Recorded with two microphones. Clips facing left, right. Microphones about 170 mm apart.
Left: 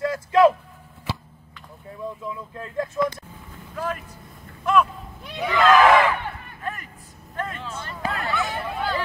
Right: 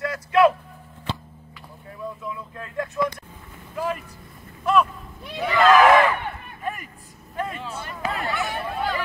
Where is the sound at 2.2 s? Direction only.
25° left (ahead or behind).